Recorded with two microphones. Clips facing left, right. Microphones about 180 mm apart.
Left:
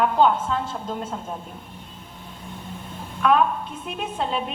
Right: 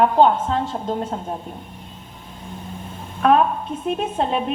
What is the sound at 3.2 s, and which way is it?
A woman's voice, 35° right (ahead or behind).